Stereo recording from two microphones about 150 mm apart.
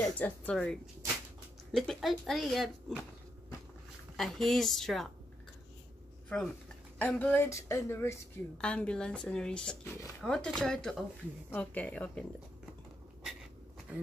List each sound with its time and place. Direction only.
0.0 s speech: 10° left (ahead or behind)
1.8 s speech: centre (ahead or behind)
4.2 s speech: centre (ahead or behind)
6.2 s speech: 5° left (ahead or behind)
8.5 s speech: 5° left (ahead or behind)